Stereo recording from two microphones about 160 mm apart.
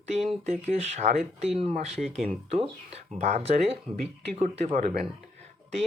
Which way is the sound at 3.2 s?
45° right (ahead or behind).